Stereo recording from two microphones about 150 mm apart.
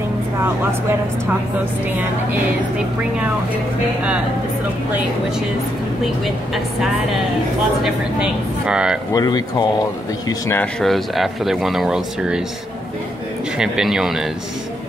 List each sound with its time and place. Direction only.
6.0 s speech: centre (ahead or behind)
9.1 s speech: 25° left (ahead or behind)
10.8 s speech: centre (ahead or behind)
13.6 s speech: 5° right (ahead or behind)